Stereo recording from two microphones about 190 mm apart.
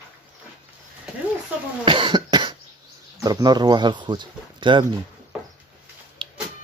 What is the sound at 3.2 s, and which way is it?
Speech, 20° right (ahead or behind).